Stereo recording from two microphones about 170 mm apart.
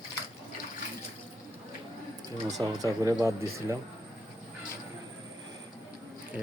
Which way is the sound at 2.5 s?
20° right (ahead or behind).